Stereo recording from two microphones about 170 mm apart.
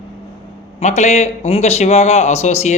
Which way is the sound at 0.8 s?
45° left (ahead or behind).